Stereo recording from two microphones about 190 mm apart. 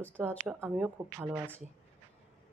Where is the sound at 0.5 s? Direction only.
5° right (ahead or behind).